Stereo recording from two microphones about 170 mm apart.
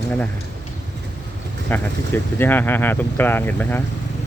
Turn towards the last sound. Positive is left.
turn(degrees=10)  # may be behind; listen again after turning